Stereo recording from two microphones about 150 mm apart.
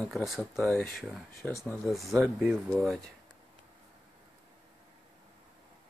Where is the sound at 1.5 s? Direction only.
20° left (ahead or behind).